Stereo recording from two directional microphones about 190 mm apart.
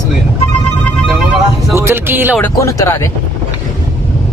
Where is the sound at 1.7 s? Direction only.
15° right (ahead or behind).